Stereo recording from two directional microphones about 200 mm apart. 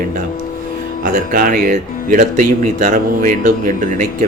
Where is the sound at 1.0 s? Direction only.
45° right (ahead or behind).